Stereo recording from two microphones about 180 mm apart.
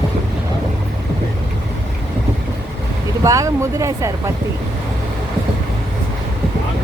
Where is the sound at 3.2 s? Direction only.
20° right (ahead or behind).